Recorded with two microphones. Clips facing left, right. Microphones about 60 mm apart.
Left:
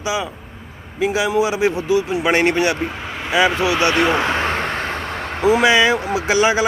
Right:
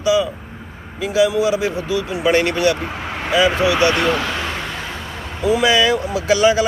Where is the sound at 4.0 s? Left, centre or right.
Left.